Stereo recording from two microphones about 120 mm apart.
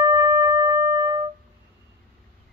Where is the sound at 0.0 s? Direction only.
30° right (ahead or behind).